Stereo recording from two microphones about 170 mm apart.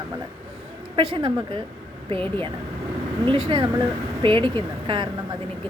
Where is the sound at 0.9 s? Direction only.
30° right (ahead or behind).